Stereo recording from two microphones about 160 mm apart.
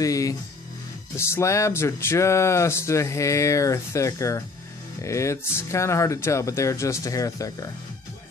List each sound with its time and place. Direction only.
0.0 s speech: 20° left (ahead or behind)